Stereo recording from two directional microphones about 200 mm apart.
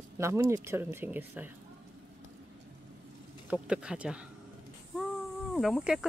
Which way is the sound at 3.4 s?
5° right (ahead or behind).